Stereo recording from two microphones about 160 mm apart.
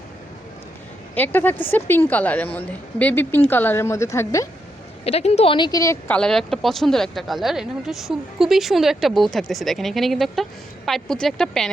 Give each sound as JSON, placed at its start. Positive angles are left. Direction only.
{"t": 1.1, "sound": "a woman's voice", "side_deg": 10}
{"t": 5.0, "sound": "speech", "side_deg": 40}
{"t": 5.5, "sound": "a woman's voice", "side_deg": 25}
{"t": 6.1, "sound": "speech", "side_deg": 5}